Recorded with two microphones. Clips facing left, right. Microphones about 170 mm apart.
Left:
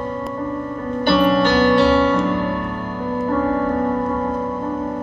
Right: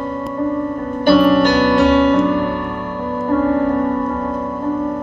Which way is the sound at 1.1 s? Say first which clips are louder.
Right 4 dB; 45° right (ahead or behind).